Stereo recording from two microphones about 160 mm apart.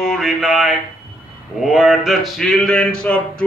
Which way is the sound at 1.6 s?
5° right (ahead or behind).